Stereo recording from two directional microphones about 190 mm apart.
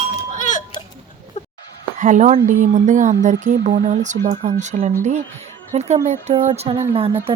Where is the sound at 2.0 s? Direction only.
40° right (ahead or behind).